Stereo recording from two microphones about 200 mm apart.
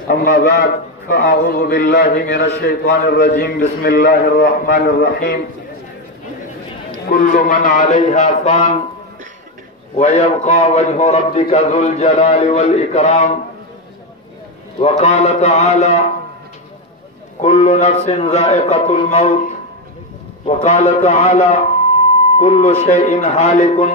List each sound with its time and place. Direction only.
0.1 s a man's voice: 45° left (ahead or behind)
7.1 s a man's voice: 45° left (ahead or behind)
9.9 s a man's voice: 35° left (ahead or behind)
14.8 s a man's voice: 35° left (ahead or behind)
17.4 s a man's voice: 35° left (ahead or behind)